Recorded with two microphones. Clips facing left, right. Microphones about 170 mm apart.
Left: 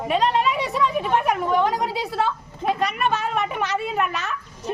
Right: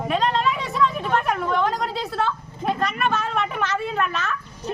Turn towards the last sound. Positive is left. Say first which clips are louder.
# even
turn(degrees=15)  # may be behind; listen again after turning